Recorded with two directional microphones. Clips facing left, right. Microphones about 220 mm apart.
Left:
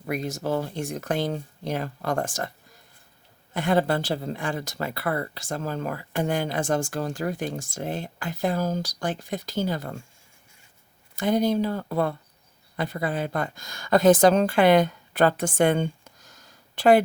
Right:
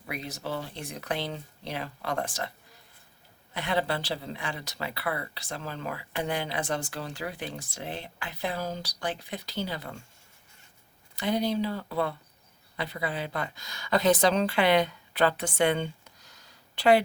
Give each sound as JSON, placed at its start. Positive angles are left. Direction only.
{"t": 0.0, "sound": "speech", "side_deg": 45}
{"t": 3.5, "sound": "speech", "side_deg": 45}
{"t": 11.1, "sound": "speech", "side_deg": 45}